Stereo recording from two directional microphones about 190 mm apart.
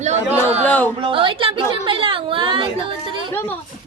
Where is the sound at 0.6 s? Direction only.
10° left (ahead or behind).